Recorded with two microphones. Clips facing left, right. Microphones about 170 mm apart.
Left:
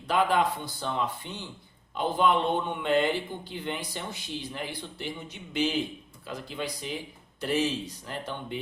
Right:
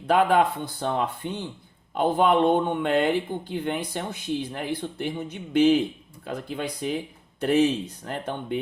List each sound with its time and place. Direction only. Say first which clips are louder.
0.1 s speech: right 5 dB; 55° right (ahead or behind)